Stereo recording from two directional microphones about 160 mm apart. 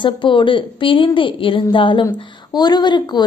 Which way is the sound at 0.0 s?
30° left (ahead or behind).